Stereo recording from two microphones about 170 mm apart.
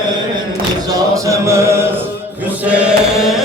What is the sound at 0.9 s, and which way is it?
A capella, 15° right (ahead or behind).